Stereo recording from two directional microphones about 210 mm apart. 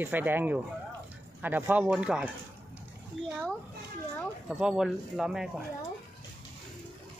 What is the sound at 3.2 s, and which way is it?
Speech, 65° right (ahead or behind).